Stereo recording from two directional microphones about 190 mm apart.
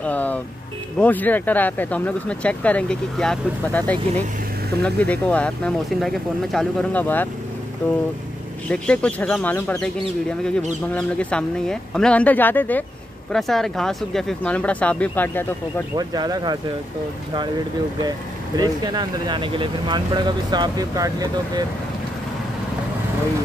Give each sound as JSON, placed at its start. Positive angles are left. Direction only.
{"t": 0.0, "sound": "speech", "side_deg": 10}
{"t": 10.9, "sound": "speech", "side_deg": 5}
{"t": 16.0, "sound": "speech", "side_deg": -20}
{"t": 18.6, "sound": "speech", "side_deg": -20}